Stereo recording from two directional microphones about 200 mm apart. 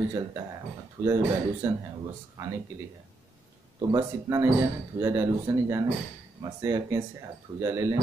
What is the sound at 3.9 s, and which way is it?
Speech, 20° right (ahead or behind).